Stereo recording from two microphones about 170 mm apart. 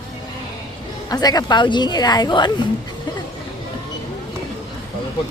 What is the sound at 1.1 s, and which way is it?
A woman's voice, 20° left (ahead or behind).